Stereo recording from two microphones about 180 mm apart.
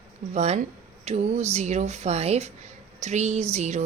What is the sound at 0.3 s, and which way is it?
Speech, 35° right (ahead or behind).